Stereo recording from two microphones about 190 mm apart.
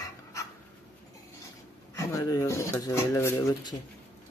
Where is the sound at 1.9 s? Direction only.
15° left (ahead or behind).